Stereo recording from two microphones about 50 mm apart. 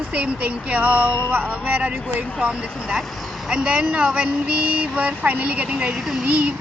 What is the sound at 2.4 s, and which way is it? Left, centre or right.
Speech, centre.